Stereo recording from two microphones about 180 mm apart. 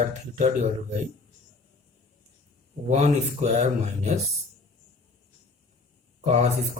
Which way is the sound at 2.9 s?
40° right (ahead or behind).